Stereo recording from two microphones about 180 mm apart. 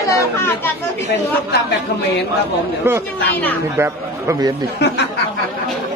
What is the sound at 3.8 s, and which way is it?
Speech, 15° right (ahead or behind).